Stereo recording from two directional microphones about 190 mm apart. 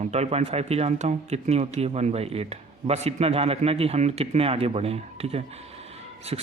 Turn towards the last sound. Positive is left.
turn(degrees=-30)  # may be behind; listen again after turning